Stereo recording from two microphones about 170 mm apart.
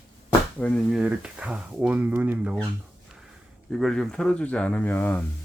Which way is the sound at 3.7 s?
Centre (ahead or behind).